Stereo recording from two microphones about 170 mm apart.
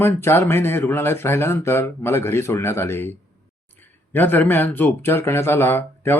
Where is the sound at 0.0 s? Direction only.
15° left (ahead or behind).